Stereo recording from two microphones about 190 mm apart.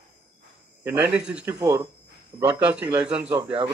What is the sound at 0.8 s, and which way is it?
A man's voice, 10° right (ahead or behind).